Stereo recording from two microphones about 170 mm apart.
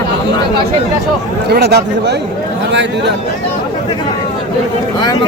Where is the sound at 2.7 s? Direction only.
90° right.